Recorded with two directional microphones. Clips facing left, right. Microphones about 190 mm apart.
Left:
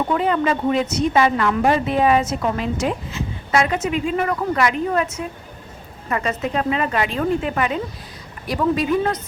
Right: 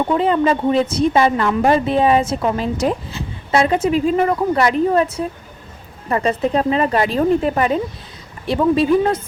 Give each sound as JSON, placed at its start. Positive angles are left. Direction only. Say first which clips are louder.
{"t": 0.1, "sound": "a woman's voice", "louder": "right 4 dB", "side_deg": -30}